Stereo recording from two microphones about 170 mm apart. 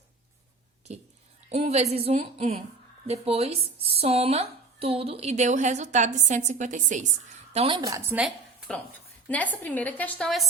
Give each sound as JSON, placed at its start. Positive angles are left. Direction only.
{"t": 0.9, "sound": "speech", "side_deg": -40}
{"t": 7.5, "sound": "a woman's voice", "side_deg": -35}
{"t": 7.8, "sound": "a woman's voice", "side_deg": -20}
{"t": 8.1, "sound": "a woman's voice", "side_deg": -5}
{"t": 9.3, "sound": "a woman's voice", "side_deg": 10}